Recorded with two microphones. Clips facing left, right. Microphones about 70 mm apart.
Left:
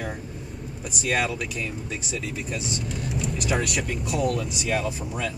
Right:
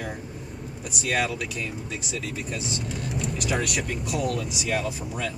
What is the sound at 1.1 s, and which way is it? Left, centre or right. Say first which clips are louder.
Speech: even; centre.